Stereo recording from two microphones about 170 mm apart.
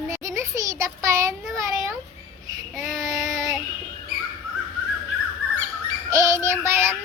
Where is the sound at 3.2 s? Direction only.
20° right (ahead or behind).